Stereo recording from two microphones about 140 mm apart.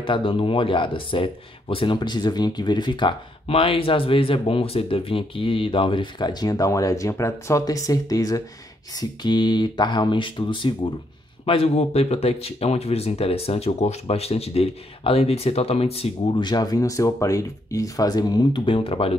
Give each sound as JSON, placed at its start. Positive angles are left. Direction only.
{"t": 0.0, "sound": "speech", "side_deg": 40}